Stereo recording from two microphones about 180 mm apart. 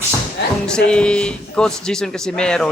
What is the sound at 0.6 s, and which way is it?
A man's voice, 5° left (ahead or behind).